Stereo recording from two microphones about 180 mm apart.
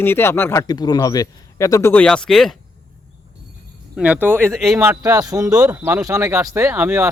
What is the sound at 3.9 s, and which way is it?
Speech, 10° right (ahead or behind).